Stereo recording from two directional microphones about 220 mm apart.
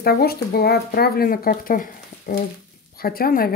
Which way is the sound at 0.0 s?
45° left (ahead or behind).